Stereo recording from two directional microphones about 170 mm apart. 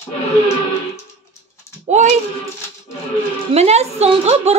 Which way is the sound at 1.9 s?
40° right (ahead or behind).